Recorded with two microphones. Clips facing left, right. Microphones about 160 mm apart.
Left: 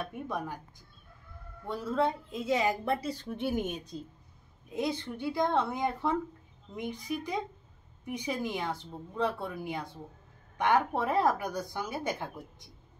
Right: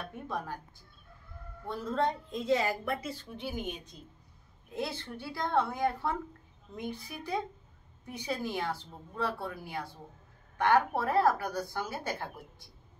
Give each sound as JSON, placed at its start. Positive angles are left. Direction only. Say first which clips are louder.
{"t": 1.7, "sound": "speech", "louder": "left 1 dB", "side_deg": 10}
{"t": 2.8, "sound": "speech", "louder": "left 4 dB", "side_deg": 35}
{"t": 3.9, "sound": "a woman's voice", "louder": "left 10 dB", "side_deg": 30}
{"t": 4.7, "sound": "a woman's voice", "louder": "left 4 dB", "side_deg": 15}